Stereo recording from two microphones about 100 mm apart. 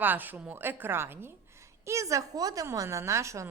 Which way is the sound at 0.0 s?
20° right (ahead or behind).